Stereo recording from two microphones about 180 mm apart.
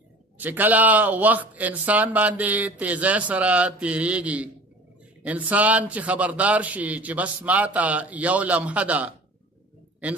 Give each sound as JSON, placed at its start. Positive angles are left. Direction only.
{"t": 0.4, "sound": "speech", "side_deg": -10}